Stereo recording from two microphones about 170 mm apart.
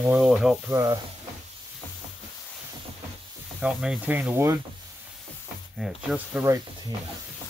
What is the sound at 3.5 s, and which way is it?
Speech, 5° right (ahead or behind).